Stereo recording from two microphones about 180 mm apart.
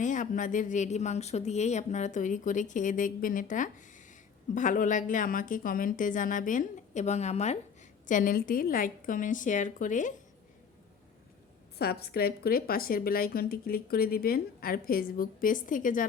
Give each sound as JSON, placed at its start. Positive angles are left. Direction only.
{"t": 0.0, "sound": "a woman's voice", "side_deg": 45}
{"t": 11.8, "sound": "a woman's voice", "side_deg": 60}